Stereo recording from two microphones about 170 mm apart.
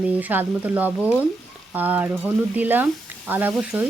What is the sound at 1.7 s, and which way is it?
Speech, 10° right (ahead or behind).